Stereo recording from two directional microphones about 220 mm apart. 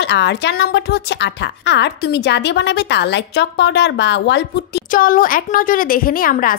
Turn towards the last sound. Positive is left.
turn(degrees=40)  # may be behind; listen again after turning